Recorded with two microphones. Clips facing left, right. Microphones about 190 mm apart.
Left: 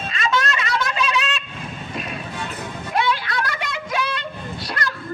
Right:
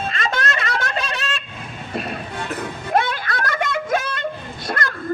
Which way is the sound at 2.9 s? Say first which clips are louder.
Right 1 dB; 50° right (ahead or behind).